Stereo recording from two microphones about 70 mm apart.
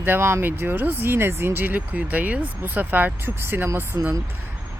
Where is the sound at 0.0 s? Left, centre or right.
Right.